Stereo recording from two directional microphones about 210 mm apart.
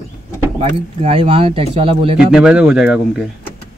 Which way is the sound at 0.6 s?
25° right (ahead or behind).